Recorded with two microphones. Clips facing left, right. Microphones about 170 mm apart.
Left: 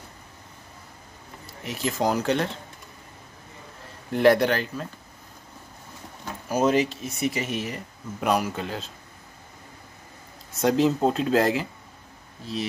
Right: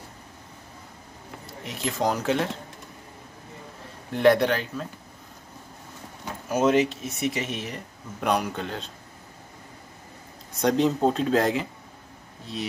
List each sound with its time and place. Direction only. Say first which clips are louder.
1.6 s speech: left 1 dB; centre (ahead or behind)
4.1 s speech: left 1 dB; centre (ahead or behind)
6.5 s speech: right 1 dB; centre (ahead or behind)
10.5 s speech: left 1 dB; centre (ahead or behind)